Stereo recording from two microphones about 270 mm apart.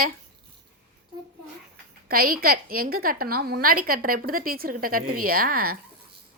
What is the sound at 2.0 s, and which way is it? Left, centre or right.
A woman's voice, right.